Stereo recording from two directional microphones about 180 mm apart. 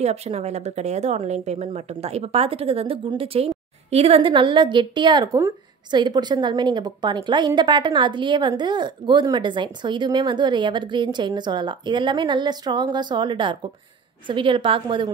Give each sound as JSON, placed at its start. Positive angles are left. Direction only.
{"t": 0.0, "sound": "a woman's voice", "side_deg": -35}